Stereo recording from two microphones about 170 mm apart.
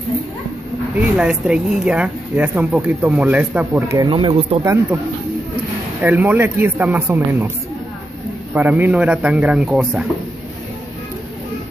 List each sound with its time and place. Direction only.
0.9 s speech: 5° right (ahead or behind)
4.0 s speech: 30° right (ahead or behind)
6.0 s speech: 10° right (ahead or behind)
8.5 s speech: 10° right (ahead or behind)